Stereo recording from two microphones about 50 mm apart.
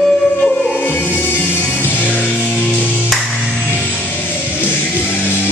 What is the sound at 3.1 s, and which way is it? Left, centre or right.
Music, centre.